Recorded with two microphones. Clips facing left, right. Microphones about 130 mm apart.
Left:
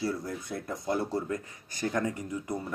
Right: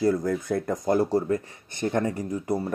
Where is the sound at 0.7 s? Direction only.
40° right (ahead or behind).